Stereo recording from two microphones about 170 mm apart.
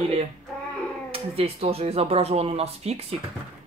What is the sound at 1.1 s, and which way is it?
Speech, 35° right (ahead or behind).